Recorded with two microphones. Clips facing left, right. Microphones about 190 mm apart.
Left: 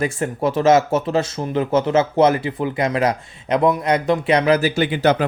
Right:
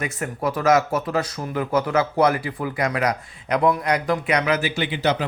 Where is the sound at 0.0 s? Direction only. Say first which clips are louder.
Left 5 dB; 25° left (ahead or behind).